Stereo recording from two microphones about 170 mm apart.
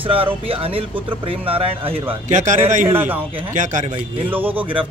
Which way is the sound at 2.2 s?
45° right (ahead or behind).